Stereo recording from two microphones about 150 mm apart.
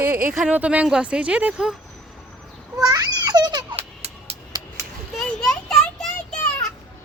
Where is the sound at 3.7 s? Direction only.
45° right (ahead or behind).